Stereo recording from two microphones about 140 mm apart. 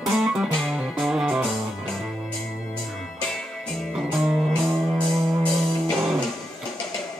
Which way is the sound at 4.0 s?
Centre (ahead or behind).